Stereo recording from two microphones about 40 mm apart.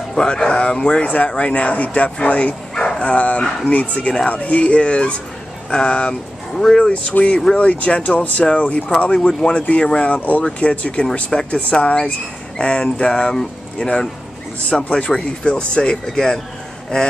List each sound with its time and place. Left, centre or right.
0.1 s speech: centre
1.0 s speech: left
2.7 s bow-wow: centre
3.0 s speech: left; by 16.3 s centre